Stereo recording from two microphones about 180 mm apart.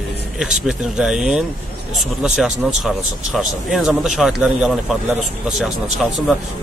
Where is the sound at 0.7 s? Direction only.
5° right (ahead or behind).